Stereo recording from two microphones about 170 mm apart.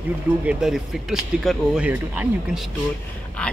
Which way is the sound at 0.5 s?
5° right (ahead or behind).